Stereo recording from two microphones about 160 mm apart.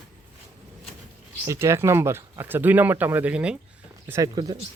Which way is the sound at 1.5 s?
15° right (ahead or behind).